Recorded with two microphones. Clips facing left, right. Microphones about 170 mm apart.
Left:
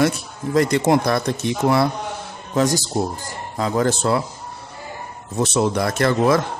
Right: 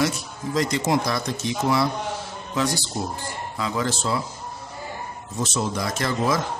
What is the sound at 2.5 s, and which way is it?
Speech, 45° left (ahead or behind).